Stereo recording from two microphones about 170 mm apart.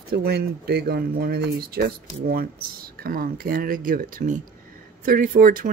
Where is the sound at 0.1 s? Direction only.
70° right (ahead or behind).